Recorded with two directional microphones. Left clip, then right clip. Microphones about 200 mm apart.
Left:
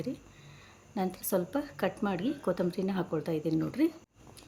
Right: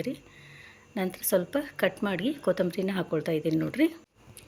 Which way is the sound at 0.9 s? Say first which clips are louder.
Right 4 dB; 5° right (ahead or behind).